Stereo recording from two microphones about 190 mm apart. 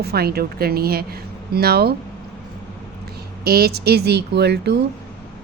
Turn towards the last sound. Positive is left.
turn(degrees=-60)  # may be behind; listen again after turning